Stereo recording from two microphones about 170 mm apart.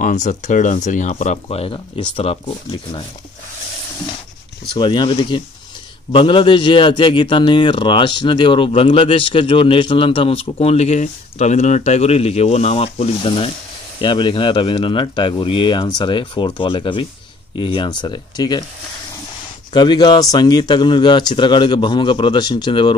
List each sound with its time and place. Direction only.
0.0 s a man's voice: 45° left (ahead or behind); by 3.1 s 30° left (ahead or behind)
4.7 s a man's voice: 25° left (ahead or behind)
19.7 s a man's voice: 25° left (ahead or behind)